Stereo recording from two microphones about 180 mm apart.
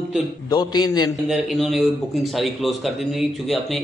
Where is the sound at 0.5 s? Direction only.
20° left (ahead or behind).